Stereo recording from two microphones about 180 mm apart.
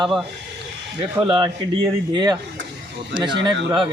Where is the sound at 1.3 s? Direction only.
25° right (ahead or behind).